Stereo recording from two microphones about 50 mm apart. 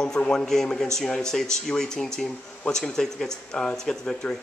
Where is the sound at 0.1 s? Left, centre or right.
Centre.